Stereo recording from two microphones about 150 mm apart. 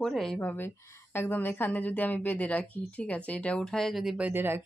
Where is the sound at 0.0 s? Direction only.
Centre (ahead or behind).